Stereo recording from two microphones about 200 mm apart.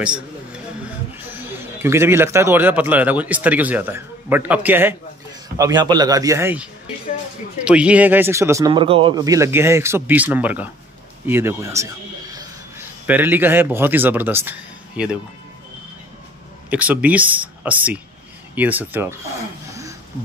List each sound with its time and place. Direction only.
1.3 s speech: 10° right (ahead or behind)
5.6 s speech: 20° right (ahead or behind)
11.2 s a sound: 10° right (ahead or behind)
13.0 s speech: 10° right (ahead or behind)
16.7 s speech: 5° right (ahead or behind)